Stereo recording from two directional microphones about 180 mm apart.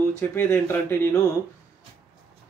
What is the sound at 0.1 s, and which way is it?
Speech, 15° left (ahead or behind).